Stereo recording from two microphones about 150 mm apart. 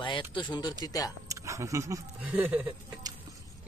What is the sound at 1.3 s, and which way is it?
Speech, 20° right (ahead or behind).